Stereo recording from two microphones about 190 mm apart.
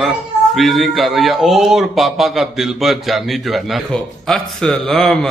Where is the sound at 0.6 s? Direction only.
Centre (ahead or behind).